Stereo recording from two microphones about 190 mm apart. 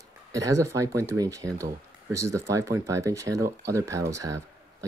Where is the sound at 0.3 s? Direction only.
15° right (ahead or behind).